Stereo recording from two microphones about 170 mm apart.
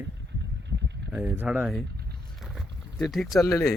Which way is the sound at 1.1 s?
10° right (ahead or behind).